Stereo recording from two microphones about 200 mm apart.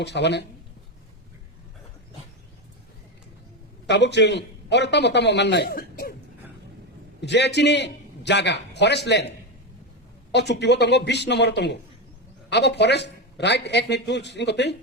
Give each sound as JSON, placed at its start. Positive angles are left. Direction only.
{"t": 0.0, "sound": "a man's voice", "side_deg": 60}
{"t": 3.8, "sound": "a man's voice", "side_deg": 60}
{"t": 7.2, "sound": "a man's voice", "side_deg": 60}
{"t": 10.3, "sound": "a man's voice", "side_deg": 60}